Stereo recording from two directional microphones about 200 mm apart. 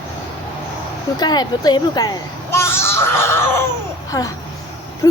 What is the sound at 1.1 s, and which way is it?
A woman's voice, 20° left (ahead or behind).